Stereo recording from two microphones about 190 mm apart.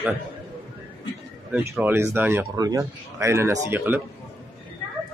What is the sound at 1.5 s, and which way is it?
Speech, 10° right (ahead or behind).